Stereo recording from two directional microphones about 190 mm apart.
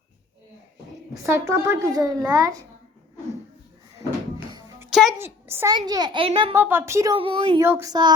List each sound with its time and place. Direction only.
1.1 s a child's voice: 15° right (ahead or behind)
4.9 s a sound: centre (ahead or behind)
5.1 s a child's voice: 10° right (ahead or behind); by 6.5 s 30° right (ahead or behind)
6.5 s a child's voice: 10° right (ahead or behind)
7.2 s a child's voice: 30° right (ahead or behind)
7.6 s a child's voice: 15° right (ahead or behind)